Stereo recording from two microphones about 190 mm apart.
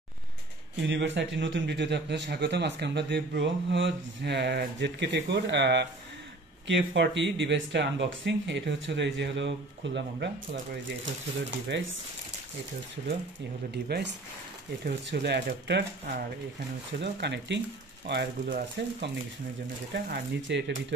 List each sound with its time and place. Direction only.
0.8 s a man's voice: 75° right (ahead or behind)
11.7 s a man's voice: 70° right (ahead or behind)
13.9 s speech: 60° right (ahead or behind)